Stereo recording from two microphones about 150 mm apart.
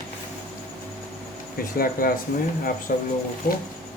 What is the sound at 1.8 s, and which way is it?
Speech, 75° left (ahead or behind).